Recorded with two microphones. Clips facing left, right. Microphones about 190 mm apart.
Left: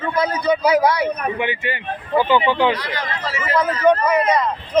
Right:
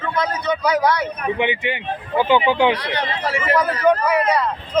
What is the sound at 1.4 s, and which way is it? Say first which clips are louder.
Speech: right 2 dB; 20° right (ahead or behind).